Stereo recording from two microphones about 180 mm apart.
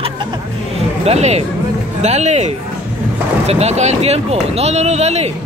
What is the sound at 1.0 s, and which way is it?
Speech, 35° right (ahead or behind).